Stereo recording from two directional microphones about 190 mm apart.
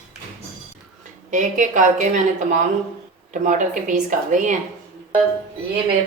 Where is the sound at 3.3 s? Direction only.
40° right (ahead or behind).